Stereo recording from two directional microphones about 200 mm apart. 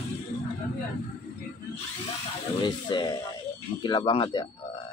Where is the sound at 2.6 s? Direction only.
25° left (ahead or behind).